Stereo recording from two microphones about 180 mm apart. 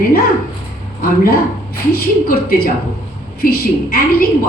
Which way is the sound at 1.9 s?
55° left (ahead or behind).